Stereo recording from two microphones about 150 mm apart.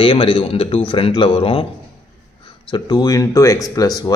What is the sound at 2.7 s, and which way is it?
Speech, 30° left (ahead or behind).